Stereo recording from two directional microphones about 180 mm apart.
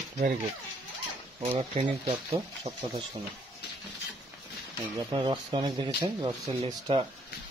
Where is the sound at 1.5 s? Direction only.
35° right (ahead or behind).